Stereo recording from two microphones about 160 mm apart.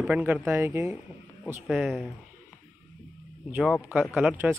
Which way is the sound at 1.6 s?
Centre (ahead or behind).